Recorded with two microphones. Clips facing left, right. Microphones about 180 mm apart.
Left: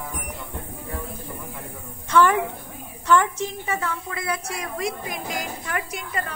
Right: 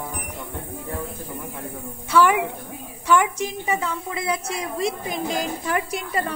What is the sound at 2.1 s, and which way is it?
A woman's voice, 10° right (ahead or behind).